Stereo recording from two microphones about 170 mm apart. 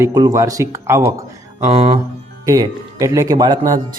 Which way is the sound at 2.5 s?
20° right (ahead or behind).